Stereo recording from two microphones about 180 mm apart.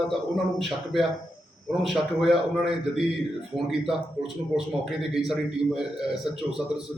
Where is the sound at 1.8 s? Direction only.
Centre (ahead or behind).